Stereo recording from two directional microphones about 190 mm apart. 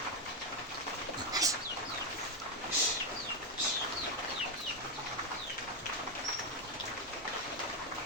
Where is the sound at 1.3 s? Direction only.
20° right (ahead or behind).